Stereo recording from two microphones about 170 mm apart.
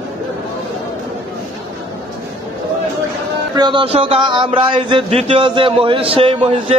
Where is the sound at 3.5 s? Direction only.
25° right (ahead or behind).